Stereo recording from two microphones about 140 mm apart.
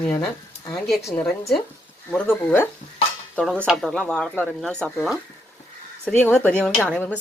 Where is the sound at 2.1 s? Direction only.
15° left (ahead or behind).